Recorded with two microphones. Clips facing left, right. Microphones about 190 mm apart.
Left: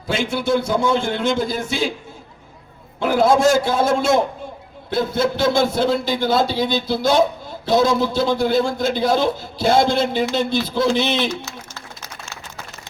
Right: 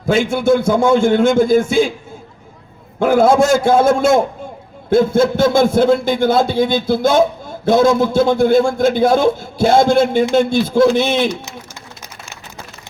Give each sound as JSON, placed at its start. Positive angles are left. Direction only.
{"t": 0.1, "sound": "a man's voice", "side_deg": -50}
{"t": 3.0, "sound": "a man's voice", "side_deg": -50}